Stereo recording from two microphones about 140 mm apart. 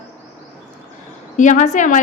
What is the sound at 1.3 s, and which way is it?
Speech, 60° left (ahead or behind).